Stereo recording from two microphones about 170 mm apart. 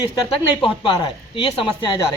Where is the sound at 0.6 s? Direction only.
25° left (ahead or behind).